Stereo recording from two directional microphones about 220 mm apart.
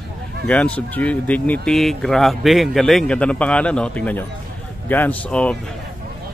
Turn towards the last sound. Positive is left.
turn(degrees=5)  # may be behind; listen again after turning